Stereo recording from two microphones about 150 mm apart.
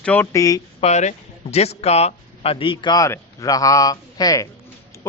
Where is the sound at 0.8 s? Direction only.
50° left (ahead or behind).